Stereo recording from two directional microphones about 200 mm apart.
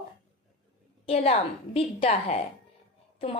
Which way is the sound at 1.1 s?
30° left (ahead or behind).